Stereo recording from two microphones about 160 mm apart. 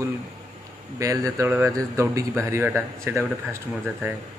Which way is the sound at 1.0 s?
20° right (ahead or behind).